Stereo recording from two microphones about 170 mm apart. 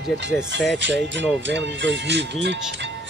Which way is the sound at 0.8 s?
90° right.